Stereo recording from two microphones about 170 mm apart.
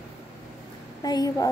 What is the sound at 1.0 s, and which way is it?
Speech, 20° left (ahead or behind).